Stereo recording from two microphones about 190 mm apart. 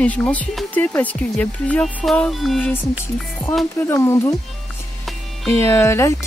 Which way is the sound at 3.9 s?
10° left (ahead or behind).